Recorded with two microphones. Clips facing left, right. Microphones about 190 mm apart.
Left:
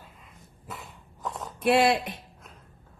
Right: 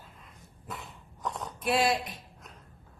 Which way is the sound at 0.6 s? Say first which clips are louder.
Even; centre (ahead or behind).